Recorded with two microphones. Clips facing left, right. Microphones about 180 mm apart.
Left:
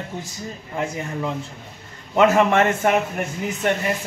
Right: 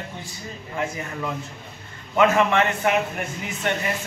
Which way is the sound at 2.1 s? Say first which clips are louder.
Left 3 dB; 40° left (ahead or behind).